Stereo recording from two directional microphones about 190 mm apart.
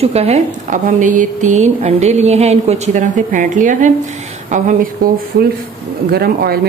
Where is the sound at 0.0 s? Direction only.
30° right (ahead or behind).